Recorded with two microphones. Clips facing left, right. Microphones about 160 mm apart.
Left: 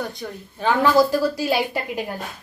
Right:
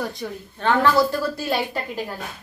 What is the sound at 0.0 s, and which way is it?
Speech, centre (ahead or behind).